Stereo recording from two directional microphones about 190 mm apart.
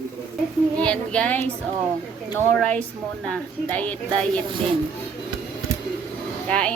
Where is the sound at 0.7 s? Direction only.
5° left (ahead or behind).